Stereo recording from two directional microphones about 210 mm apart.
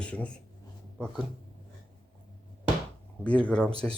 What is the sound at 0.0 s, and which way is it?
Speech, 5° left (ahead or behind).